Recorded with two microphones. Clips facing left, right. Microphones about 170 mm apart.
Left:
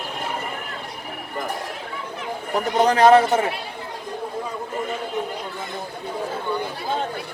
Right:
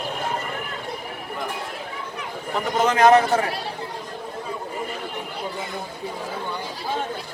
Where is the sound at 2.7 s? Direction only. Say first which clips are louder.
Left 2 dB; 35° left (ahead or behind).